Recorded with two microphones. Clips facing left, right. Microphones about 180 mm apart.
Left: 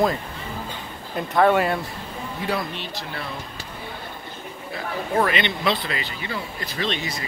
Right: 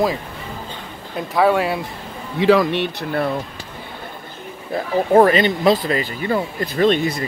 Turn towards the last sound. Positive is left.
turn(degrees=-55)  # may be behind; listen again after turning